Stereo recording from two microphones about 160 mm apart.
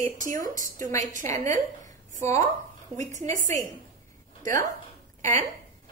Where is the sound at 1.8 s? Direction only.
50° right (ahead or behind).